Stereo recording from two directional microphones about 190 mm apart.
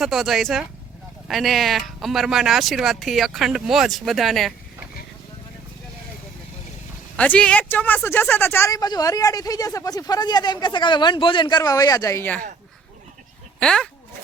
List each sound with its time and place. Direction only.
0.0 s speech: centre (ahead or behind)
7.2 s speech: 5° left (ahead or behind)
13.6 s speech: 5° left (ahead or behind)